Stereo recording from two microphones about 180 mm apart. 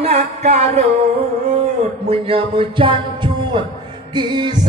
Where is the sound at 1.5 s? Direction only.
35° right (ahead or behind).